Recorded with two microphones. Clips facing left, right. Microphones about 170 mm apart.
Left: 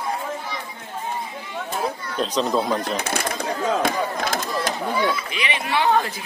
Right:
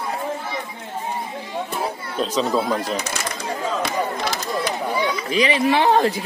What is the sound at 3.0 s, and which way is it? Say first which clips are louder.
Speech: left 2 dB; 55° left (ahead or behind).